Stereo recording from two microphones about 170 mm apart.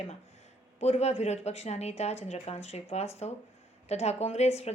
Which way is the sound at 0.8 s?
40° left (ahead or behind).